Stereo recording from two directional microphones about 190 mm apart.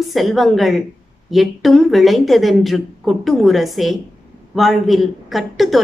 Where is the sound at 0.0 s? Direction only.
Centre (ahead or behind).